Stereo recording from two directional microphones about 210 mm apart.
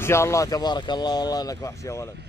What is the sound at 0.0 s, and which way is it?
Speech, 15° left (ahead or behind).